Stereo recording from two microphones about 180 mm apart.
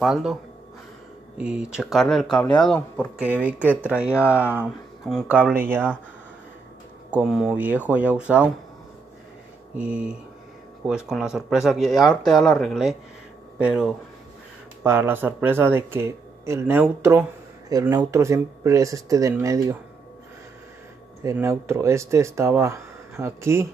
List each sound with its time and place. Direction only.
0.0 s speech: centre (ahead or behind)
1.4 s speech: 5° right (ahead or behind)
3.3 s speech: 5° right (ahead or behind)
7.1 s speech: 5° right (ahead or behind)
9.8 s speech: 5° right (ahead or behind)
21.2 s speech: 15° right (ahead or behind)